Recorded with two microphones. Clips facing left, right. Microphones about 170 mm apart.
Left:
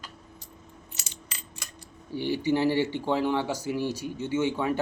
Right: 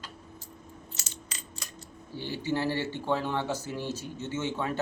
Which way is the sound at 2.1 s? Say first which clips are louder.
Left 6 dB; 15° left (ahead or behind).